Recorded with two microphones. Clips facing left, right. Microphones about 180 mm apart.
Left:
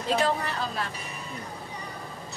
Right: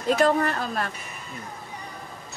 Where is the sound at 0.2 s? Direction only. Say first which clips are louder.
Right 6 dB; 50° right (ahead or behind).